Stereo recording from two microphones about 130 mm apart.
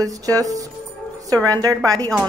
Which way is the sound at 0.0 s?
25° right (ahead or behind).